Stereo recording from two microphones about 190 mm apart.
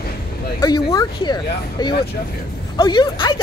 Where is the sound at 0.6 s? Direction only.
20° left (ahead or behind).